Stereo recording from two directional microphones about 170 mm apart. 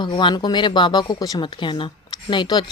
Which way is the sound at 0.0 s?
30° left (ahead or behind).